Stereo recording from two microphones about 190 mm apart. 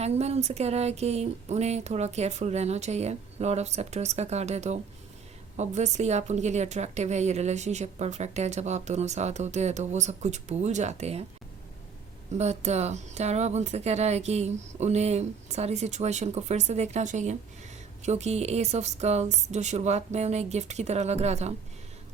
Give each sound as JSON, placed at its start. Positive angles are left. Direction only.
{"t": 0.0, "sound": "a woman's voice", "side_deg": -35}
{"t": 12.3, "sound": "a woman's voice", "side_deg": -35}